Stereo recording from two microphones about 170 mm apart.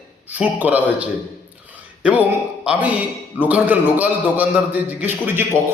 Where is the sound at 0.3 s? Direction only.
10° right (ahead or behind).